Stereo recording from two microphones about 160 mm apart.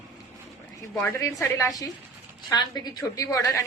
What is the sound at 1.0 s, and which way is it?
Speech, 20° left (ahead or behind).